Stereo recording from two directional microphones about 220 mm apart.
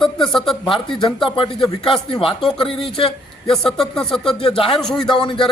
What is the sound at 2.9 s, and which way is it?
Speech, 25° left (ahead or behind).